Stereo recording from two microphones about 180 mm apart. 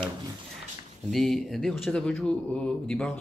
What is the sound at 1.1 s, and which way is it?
Speech, centre (ahead or behind).